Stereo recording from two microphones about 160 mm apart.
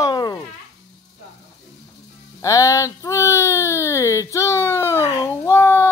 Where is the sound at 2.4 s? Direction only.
20° left (ahead or behind).